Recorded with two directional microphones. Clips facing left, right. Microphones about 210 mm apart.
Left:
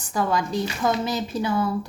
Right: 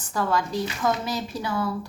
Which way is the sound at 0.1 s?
15° left (ahead or behind).